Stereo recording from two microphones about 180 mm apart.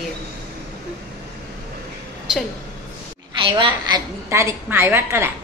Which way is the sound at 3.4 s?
25° right (ahead or behind).